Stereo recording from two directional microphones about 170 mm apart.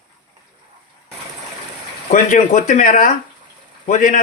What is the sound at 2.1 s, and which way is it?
Speech, 45° left (ahead or behind).